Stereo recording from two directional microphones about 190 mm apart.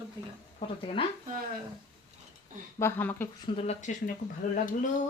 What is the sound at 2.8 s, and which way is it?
Speech, 10° left (ahead or behind).